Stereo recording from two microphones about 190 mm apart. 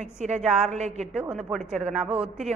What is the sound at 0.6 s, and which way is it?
Speech, 35° right (ahead or behind).